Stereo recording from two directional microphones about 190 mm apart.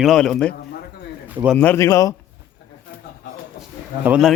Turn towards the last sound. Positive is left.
turn(degrees=-5)  # may be behind; listen again after turning